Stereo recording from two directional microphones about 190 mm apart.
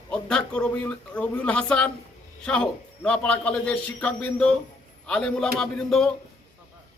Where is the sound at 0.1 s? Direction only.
5° left (ahead or behind).